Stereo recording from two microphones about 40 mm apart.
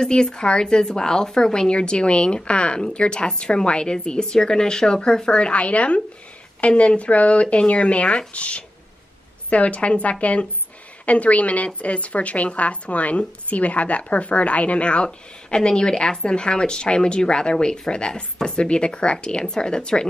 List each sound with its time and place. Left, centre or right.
0.0 s a woman's voice: centre